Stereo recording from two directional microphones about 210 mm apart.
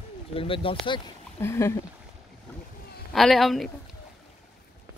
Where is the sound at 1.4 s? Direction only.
10° left (ahead or behind).